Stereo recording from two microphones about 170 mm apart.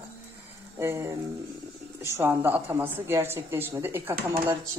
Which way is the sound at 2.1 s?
15° right (ahead or behind).